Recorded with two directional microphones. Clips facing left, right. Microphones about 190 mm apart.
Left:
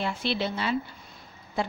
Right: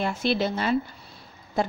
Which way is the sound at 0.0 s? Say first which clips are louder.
Right 4 dB; 45° right (ahead or behind).